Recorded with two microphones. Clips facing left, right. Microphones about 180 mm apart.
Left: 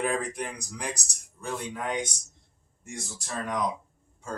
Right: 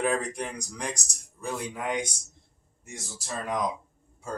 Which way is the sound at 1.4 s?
10° right (ahead or behind).